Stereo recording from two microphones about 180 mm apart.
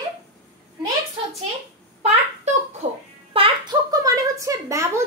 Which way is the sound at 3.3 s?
20° right (ahead or behind).